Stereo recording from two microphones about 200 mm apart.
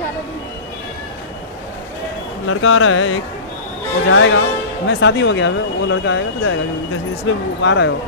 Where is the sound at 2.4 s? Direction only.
90° left.